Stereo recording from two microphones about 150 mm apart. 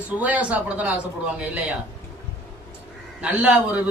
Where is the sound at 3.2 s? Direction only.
5° right (ahead or behind).